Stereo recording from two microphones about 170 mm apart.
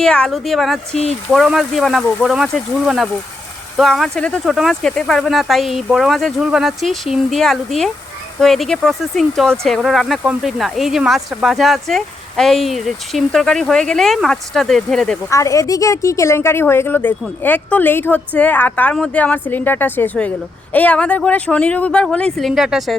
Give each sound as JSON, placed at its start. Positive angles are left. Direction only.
{"t": 0.0, "sound": "speech", "side_deg": 5}
{"t": 15.3, "sound": "a woman's voice", "side_deg": 20}